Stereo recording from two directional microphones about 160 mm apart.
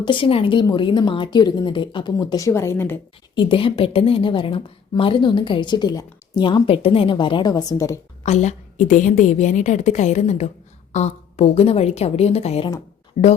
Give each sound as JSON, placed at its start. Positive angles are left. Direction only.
{"t": 0.0, "sound": "a woman's voice", "side_deg": 30}
{"t": 3.3, "sound": "a woman's voice", "side_deg": 30}
{"t": 8.2, "sound": "a woman's voice", "side_deg": 45}